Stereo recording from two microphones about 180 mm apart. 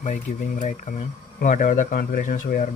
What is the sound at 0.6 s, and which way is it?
Speech, 45° left (ahead or behind).